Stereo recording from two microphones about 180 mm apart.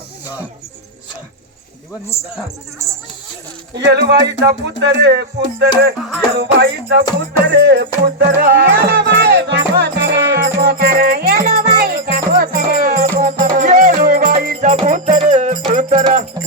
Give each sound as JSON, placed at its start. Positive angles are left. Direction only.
{"t": 3.8, "sound": "speech", "side_deg": -70}
{"t": 7.4, "sound": "music", "side_deg": -65}